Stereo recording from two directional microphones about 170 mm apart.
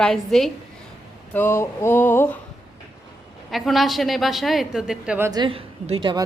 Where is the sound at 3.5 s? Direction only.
Centre (ahead or behind).